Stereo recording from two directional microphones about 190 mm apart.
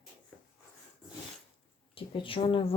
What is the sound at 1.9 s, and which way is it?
Speech, 30° left (ahead or behind).